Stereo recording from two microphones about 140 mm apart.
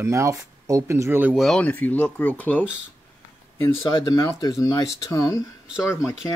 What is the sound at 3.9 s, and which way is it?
Speech, 30° left (ahead or behind).